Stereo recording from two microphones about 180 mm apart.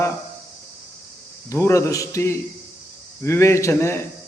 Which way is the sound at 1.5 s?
15° left (ahead or behind).